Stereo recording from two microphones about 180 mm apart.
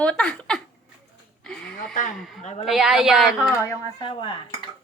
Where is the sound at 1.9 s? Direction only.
45° left (ahead or behind).